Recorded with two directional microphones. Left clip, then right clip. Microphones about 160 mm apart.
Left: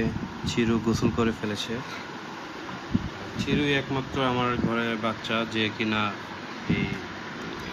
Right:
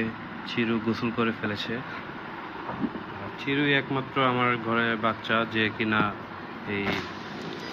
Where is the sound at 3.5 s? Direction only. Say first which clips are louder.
Right 1 dB; centre (ahead or behind); by 6.1 s 15° left (ahead or behind).